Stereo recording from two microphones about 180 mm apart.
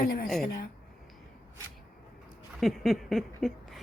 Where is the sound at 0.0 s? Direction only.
60° left (ahead or behind).